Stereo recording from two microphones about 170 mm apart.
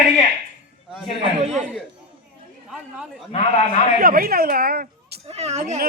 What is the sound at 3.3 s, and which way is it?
Speech, 40° left (ahead or behind).